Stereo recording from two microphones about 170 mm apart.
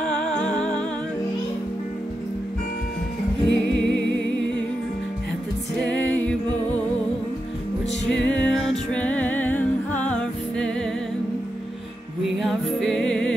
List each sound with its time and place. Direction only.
0.0 s music: 5° left (ahead or behind)
3.4 s music: 90° left
5.9 s music: 5° left (ahead or behind)
8.1 s music: 5° left (ahead or behind)
12.3 s music: centre (ahead or behind)